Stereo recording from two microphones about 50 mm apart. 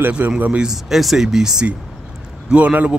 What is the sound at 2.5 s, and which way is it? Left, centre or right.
Speech, right.